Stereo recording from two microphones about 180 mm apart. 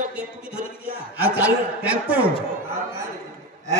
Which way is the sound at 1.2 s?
10° right (ahead or behind).